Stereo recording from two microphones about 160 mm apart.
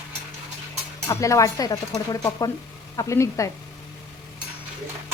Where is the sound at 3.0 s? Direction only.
20° left (ahead or behind).